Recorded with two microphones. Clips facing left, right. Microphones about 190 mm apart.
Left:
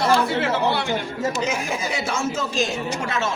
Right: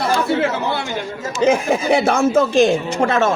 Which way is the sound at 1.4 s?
55° right (ahead or behind).